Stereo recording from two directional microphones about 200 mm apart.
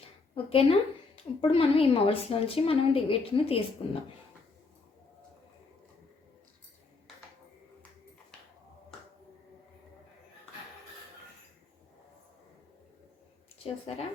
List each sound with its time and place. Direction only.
0.3 s a woman's voice: 30° left (ahead or behind)